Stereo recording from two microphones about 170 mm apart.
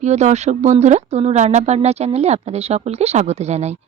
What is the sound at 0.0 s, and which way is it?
Speech, 40° right (ahead or behind).